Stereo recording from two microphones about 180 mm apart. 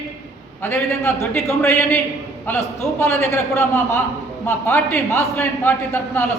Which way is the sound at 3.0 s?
15° left (ahead or behind).